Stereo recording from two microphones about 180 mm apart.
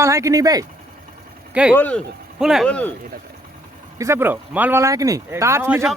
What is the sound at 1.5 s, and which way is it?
Speech, 5° right (ahead or behind).